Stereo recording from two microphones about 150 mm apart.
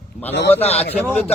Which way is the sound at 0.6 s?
45° left (ahead or behind).